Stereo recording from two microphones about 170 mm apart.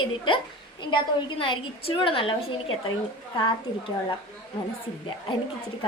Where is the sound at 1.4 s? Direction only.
30° left (ahead or behind).